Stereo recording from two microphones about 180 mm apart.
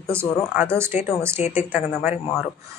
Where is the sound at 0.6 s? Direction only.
10° right (ahead or behind).